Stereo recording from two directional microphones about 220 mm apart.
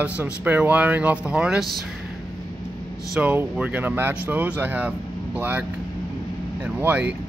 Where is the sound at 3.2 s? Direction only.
5° right (ahead or behind).